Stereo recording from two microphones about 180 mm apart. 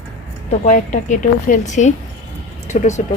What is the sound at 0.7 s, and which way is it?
A woman's voice, 45° left (ahead or behind).